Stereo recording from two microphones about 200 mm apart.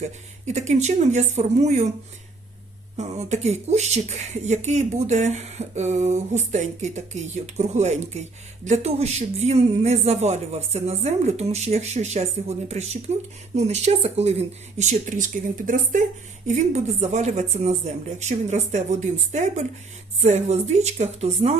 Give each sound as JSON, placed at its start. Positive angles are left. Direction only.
{"t": 0.0, "sound": "speech", "side_deg": -35}
{"t": 3.0, "sound": "speech", "side_deg": -35}